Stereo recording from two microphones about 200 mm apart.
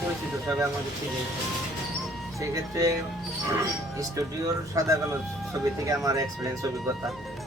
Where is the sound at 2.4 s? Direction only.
15° right (ahead or behind).